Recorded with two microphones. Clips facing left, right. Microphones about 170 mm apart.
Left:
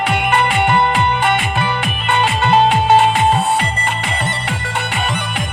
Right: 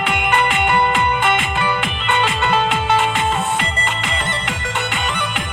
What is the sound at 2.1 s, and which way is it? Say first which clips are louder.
Music: left 4 dB; 35° left (ahead or behind).